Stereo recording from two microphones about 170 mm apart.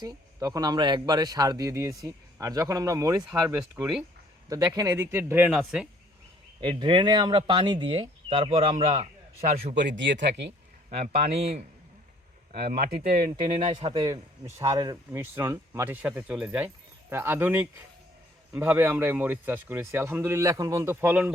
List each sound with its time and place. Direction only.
0.0 s speech: 25° right (ahead or behind)
4.7 s speech: 20° right (ahead or behind)
6.6 s speech: 30° right (ahead or behind)
9.7 s speech: 90° right
10.8 s speech: 40° right (ahead or behind)
12.5 s speech: 65° right (ahead or behind)
13.3 s speech: 30° right (ahead or behind)
13.9 s speech: 20° right (ahead or behind)